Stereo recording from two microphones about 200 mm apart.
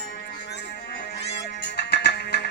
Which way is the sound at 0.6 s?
60° left (ahead or behind).